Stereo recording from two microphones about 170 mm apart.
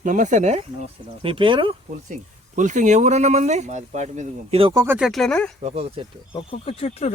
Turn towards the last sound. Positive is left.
turn(degrees=40)  # may be behind; listen again after turning